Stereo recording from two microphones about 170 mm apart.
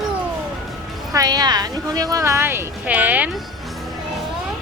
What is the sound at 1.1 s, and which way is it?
Speech, 20° right (ahead or behind).